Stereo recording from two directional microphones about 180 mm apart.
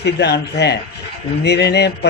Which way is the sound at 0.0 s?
70° left (ahead or behind).